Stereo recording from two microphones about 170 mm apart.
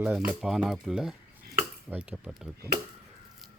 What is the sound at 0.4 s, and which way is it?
A man's voice, centre (ahead or behind).